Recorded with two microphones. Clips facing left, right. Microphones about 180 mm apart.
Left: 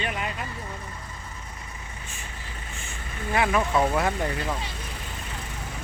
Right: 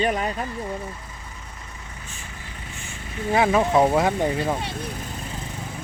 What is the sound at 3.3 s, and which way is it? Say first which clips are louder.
Speech: right 5 dB; 25° right (ahead or behind).